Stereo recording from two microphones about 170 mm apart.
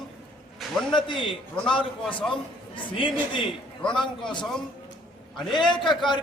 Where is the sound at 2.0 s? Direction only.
5° left (ahead or behind).